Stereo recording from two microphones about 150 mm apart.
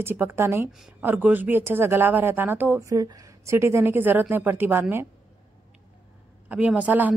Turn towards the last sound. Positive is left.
turn(degrees=-10)  # may be behind; listen again after turning